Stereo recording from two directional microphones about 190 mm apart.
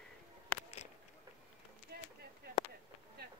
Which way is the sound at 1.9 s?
55° right (ahead or behind).